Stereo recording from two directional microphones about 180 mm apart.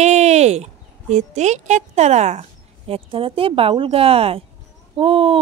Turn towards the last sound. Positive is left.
turn(degrees=-30)  # may be behind; listen again after turning